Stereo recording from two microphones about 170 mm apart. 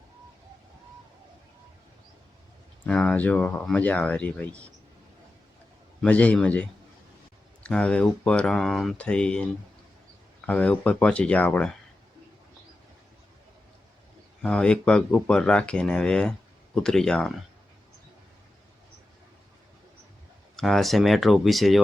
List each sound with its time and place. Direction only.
2.8 s speech: 5° left (ahead or behind)
6.0 s speech: 10° left (ahead or behind)
14.4 s speech: 5° left (ahead or behind)
20.6 s speech: centre (ahead or behind)